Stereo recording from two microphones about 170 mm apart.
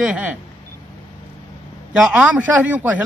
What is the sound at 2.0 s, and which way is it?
Speech, 5° right (ahead or behind).